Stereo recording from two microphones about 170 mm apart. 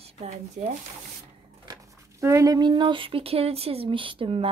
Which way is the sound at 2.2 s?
20° right (ahead or behind).